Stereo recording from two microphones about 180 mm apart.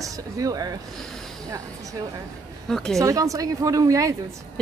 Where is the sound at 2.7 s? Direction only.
5° left (ahead or behind).